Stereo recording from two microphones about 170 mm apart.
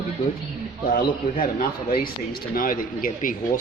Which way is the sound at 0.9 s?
55° left (ahead or behind).